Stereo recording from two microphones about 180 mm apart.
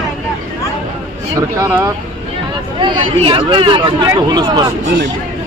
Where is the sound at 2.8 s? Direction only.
30° right (ahead or behind).